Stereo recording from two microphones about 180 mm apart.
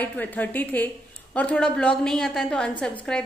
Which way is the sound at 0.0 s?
10° left (ahead or behind).